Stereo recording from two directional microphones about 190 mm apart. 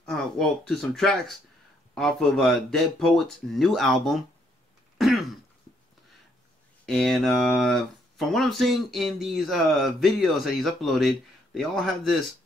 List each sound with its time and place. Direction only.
0.0 s speech: 5° left (ahead or behind)
4.9 s throat clearing: centre (ahead or behind)
6.9 s speech: centre (ahead or behind)